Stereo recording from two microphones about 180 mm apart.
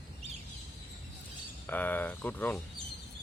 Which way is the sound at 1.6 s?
10° left (ahead or behind).